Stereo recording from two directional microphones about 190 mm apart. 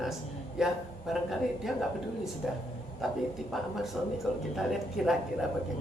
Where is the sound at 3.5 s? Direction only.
Centre (ahead or behind).